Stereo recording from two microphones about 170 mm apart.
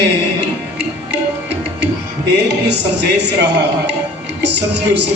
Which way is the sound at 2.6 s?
90° right.